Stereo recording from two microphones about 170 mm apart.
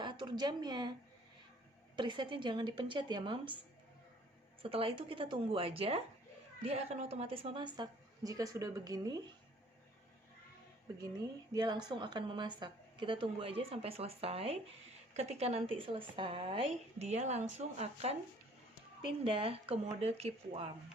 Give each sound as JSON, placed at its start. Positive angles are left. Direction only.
{"t": 0.0, "sound": "speech", "side_deg": -25}
{"t": 2.0, "sound": "a woman's voice", "side_deg": -30}
{"t": 4.6, "sound": "a woman's voice", "side_deg": -35}
{"t": 11.5, "sound": "a woman's voice", "side_deg": -25}